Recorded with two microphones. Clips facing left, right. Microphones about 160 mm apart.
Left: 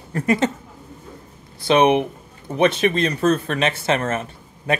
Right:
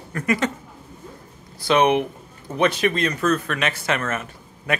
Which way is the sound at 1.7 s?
25° left (ahead or behind).